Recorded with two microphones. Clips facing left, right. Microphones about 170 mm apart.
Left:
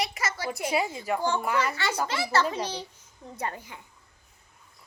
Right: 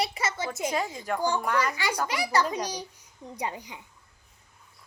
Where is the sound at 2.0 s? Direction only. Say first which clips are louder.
Even; 15° right (ahead or behind).